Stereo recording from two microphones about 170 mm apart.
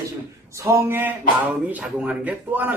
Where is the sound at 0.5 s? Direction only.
15° right (ahead or behind).